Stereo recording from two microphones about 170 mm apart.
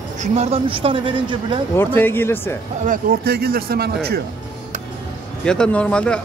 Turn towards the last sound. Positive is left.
turn(degrees=5)  # may be behind; listen again after turning